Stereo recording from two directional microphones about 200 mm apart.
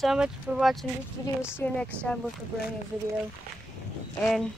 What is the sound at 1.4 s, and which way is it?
Speech, 10° left (ahead or behind).